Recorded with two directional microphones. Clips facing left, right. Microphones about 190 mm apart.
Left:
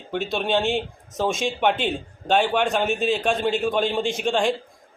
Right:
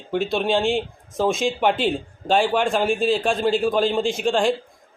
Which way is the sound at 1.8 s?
5° right (ahead or behind).